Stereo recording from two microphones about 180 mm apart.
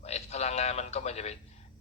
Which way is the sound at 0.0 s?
35° left (ahead or behind).